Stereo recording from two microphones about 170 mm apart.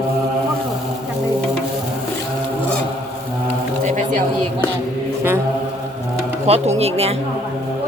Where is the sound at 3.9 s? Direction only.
45° right (ahead or behind).